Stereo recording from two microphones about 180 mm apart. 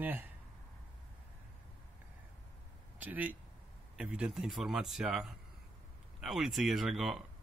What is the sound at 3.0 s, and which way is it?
Speech, 10° right (ahead or behind).